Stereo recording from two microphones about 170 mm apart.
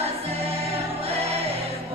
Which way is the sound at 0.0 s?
35° right (ahead or behind).